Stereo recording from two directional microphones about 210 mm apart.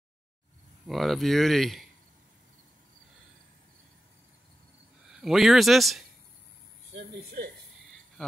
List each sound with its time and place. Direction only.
0.8 s speech: centre (ahead or behind)
5.1 s speech: centre (ahead or behind)
6.9 s speech: 50° right (ahead or behind)